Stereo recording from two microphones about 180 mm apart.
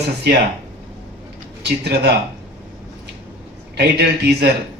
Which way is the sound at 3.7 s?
65° right (ahead or behind).